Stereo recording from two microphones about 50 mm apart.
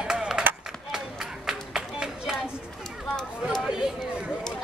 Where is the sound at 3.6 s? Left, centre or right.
Centre.